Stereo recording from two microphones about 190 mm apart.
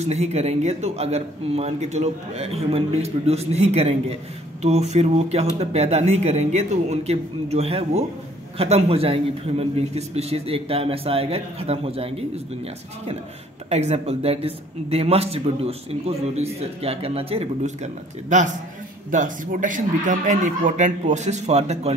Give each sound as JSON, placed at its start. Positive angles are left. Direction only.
{"t": 0.0, "sound": "a man's voice", "side_deg": -35}
{"t": 13.7, "sound": "a man's voice", "side_deg": -35}